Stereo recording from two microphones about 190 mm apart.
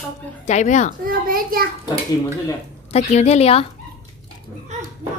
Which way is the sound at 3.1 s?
35° left (ahead or behind).